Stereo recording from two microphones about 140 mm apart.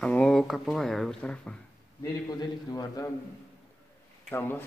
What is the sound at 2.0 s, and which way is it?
A man's voice, 30° left (ahead or behind).